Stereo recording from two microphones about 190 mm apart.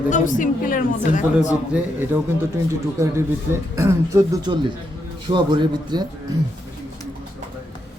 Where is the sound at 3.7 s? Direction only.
15° right (ahead or behind).